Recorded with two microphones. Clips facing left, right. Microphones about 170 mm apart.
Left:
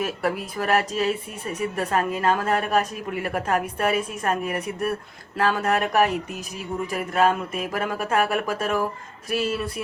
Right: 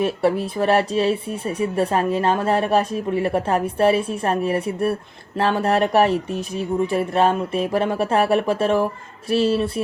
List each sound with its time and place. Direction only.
0.0 s speech: 30° right (ahead or behind)